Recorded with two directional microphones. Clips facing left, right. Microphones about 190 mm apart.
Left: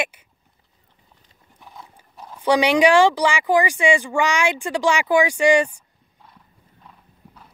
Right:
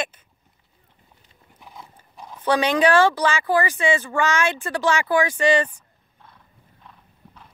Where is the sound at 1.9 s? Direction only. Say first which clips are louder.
Even; 5° left (ahead or behind).